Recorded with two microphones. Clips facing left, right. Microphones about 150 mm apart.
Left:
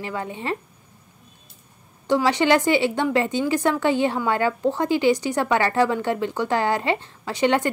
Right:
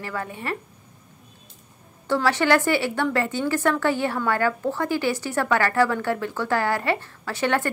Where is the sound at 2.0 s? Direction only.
15° left (ahead or behind).